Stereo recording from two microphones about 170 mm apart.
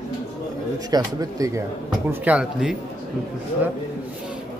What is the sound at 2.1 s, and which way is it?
Speech, 10° right (ahead or behind).